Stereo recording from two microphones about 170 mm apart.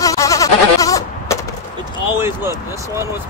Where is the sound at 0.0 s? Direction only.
20° left (ahead or behind).